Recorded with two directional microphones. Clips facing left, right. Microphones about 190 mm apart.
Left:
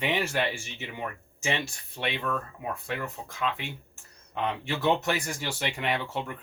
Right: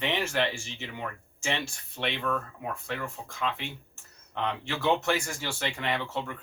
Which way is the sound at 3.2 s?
15° left (ahead or behind).